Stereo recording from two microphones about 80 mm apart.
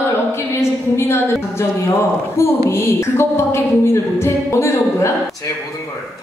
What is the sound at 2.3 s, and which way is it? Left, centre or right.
A woman's voice, left.